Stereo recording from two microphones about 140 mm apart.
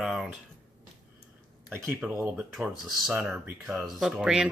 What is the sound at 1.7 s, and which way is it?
Speech, 20° right (ahead or behind).